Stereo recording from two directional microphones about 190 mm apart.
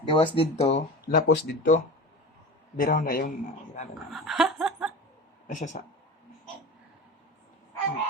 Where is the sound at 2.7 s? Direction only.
50° left (ahead or behind).